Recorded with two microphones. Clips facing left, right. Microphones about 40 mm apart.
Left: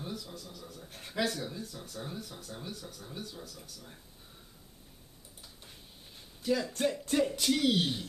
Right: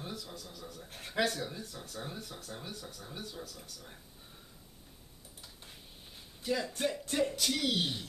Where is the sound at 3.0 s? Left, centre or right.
Right.